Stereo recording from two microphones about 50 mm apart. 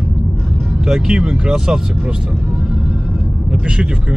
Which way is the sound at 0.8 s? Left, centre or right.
Centre.